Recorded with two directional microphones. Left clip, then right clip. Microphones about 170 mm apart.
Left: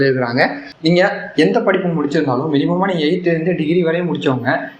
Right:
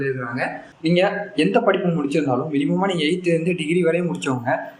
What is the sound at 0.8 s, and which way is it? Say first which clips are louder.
A man's voice: left 5 dB; 10° right (ahead or behind).